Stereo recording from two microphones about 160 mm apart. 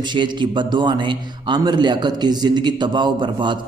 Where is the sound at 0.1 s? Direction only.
30° right (ahead or behind).